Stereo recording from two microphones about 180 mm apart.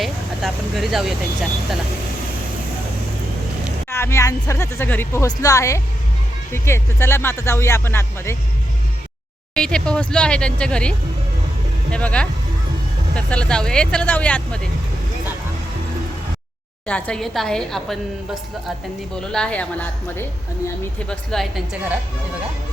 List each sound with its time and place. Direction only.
0.0 s speech: centre (ahead or behind)
3.8 s speech: 15° left (ahead or behind)
9.6 s speech: 5° left (ahead or behind)
16.8 s speech: 5° left (ahead or behind)
19.1 s speech: 5° left (ahead or behind)